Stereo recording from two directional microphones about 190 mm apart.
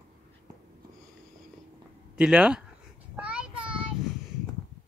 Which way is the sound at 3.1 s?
5° right (ahead or behind).